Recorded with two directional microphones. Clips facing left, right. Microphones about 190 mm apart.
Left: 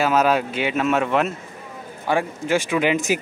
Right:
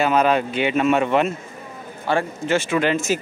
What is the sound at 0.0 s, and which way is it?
Speech, 5° left (ahead or behind).